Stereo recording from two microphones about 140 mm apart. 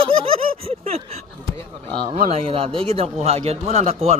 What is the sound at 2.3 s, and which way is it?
A woman's voice, 40° right (ahead or behind).